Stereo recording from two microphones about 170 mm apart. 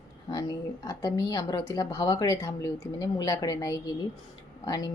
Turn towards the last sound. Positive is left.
turn(degrees=20)  # may be behind; listen again after turning